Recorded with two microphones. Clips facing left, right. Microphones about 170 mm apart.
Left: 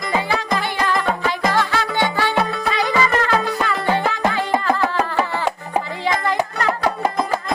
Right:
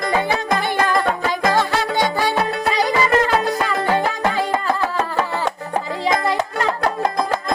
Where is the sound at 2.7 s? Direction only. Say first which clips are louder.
Right 4 dB; 35° right (ahead or behind).